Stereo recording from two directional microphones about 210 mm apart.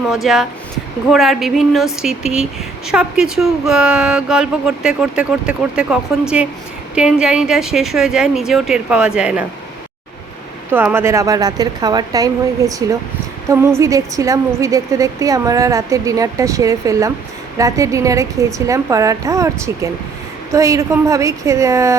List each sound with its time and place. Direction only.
0.1 s speech: centre (ahead or behind)
10.7 s a woman's voice: 10° right (ahead or behind)